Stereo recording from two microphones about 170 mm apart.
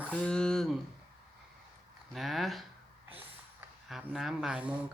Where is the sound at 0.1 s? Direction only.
5° left (ahead or behind).